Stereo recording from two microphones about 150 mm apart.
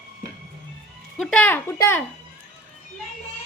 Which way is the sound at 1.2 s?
5° left (ahead or behind).